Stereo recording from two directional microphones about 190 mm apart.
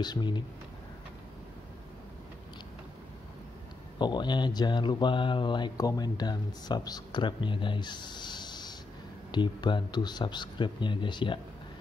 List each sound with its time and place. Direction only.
0.0 s speech: 25° left (ahead or behind)
4.0 s speech: 25° left (ahead or behind)